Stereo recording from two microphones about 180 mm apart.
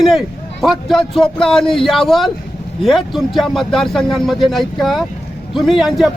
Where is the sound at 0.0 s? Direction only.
Centre (ahead or behind).